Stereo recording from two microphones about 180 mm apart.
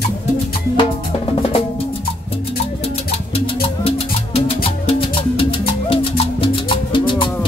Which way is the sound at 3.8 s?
35° left (ahead or behind).